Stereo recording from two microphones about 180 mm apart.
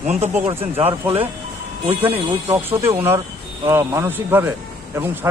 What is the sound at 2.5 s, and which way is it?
Speech, 15° right (ahead or behind).